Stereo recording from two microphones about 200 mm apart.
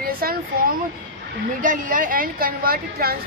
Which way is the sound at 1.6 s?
40° right (ahead or behind).